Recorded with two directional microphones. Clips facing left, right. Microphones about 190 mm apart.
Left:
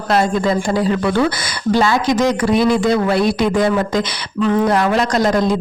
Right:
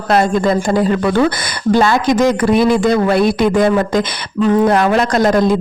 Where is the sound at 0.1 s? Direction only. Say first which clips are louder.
Right 3 dB; 50° right (ahead or behind).